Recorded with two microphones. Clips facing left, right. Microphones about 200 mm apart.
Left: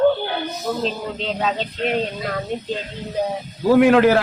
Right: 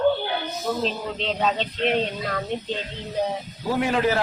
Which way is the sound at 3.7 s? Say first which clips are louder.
Left 9 dB; 70° left (ahead or behind).